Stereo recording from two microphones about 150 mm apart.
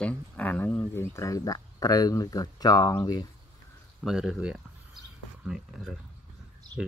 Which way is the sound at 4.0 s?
5° right (ahead or behind).